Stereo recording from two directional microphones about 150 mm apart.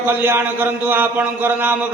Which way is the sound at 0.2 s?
15° right (ahead or behind).